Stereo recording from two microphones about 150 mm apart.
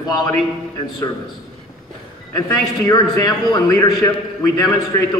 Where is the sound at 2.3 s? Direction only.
25° left (ahead or behind).